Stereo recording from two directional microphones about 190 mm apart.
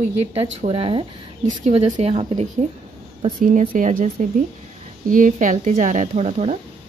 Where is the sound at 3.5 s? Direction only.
40° right (ahead or behind).